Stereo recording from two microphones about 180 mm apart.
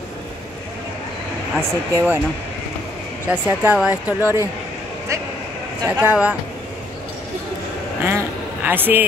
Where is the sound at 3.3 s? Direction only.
10° right (ahead or behind).